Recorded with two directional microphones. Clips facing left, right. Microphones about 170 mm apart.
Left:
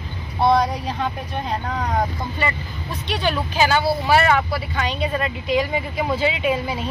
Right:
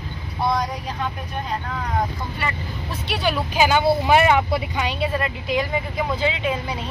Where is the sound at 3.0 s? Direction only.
10° right (ahead or behind); by 6.8 s 5° left (ahead or behind).